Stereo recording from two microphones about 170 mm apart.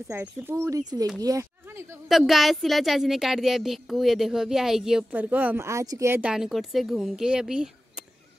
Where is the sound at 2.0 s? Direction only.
Centre (ahead or behind).